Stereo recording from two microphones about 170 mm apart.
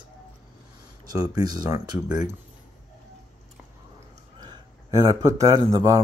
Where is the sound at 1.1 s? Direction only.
25° right (ahead or behind).